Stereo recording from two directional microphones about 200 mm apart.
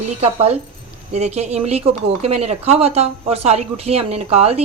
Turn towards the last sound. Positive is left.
turn(degrees=-30)  # may be behind; listen again after turning